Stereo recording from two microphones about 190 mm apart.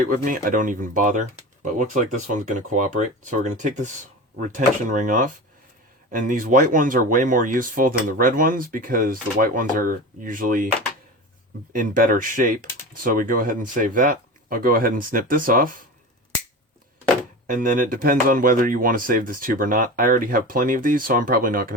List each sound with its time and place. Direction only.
0.0 s speech: 45° right (ahead or behind)
11.7 s speech: 45° right (ahead or behind)
17.4 s speech: 45° right (ahead or behind)